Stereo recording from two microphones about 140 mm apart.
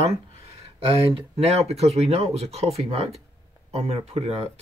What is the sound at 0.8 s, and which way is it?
Speech, 45° right (ahead or behind).